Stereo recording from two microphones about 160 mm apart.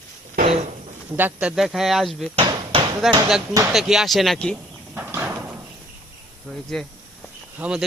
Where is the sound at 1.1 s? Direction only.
10° right (ahead or behind).